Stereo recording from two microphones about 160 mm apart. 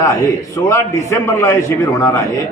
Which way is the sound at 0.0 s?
20° left (ahead or behind).